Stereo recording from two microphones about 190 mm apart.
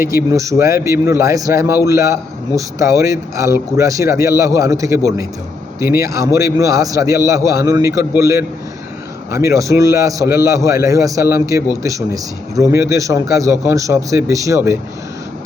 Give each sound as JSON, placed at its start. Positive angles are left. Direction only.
{"t": 0.0, "sound": "a man's voice", "side_deg": -15}